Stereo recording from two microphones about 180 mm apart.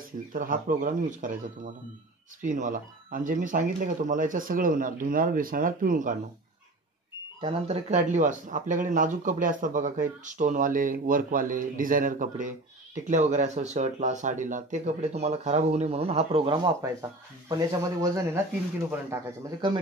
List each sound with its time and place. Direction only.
0.3 s speech: 50° right (ahead or behind)
2.4 s speech: 45° right (ahead or behind)
7.3 s speech: 30° right (ahead or behind)
16.5 s speech: 20° right (ahead or behind)